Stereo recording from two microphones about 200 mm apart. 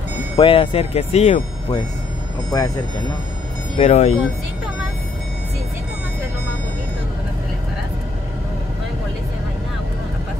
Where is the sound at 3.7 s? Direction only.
30° left (ahead or behind).